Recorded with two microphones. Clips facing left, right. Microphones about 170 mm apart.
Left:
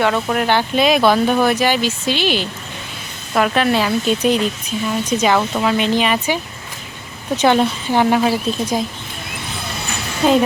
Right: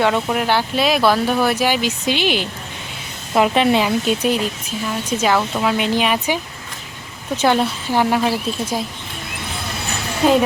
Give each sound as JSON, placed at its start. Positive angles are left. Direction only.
{"t": 0.3, "sound": "speech", "side_deg": -5}
{"t": 3.8, "sound": "speech", "side_deg": -5}
{"t": 7.4, "sound": "speech", "side_deg": -5}
{"t": 10.2, "sound": "speech", "side_deg": -5}